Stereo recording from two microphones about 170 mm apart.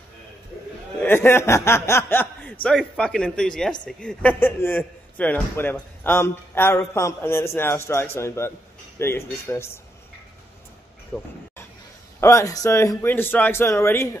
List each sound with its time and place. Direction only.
0.9 s a man's voice: 15° left (ahead or behind)
11.1 s a man's voice: 5° left (ahead or behind)
12.2 s a man's voice: 15° left (ahead or behind)